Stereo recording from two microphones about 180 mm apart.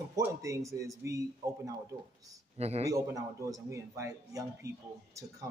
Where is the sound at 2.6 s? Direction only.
35° right (ahead or behind).